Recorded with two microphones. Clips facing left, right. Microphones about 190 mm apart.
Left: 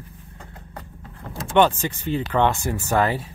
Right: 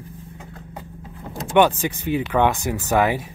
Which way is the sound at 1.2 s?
15° right (ahead or behind).